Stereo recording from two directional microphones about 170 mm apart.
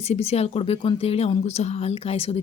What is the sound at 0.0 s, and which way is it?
A woman's voice, 35° left (ahead or behind).